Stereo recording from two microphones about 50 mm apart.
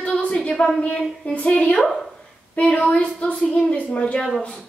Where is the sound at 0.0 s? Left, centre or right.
Left.